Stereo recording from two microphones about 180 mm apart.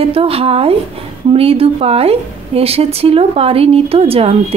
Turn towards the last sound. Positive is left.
turn(degrees=-35)  # may be behind; listen again after turning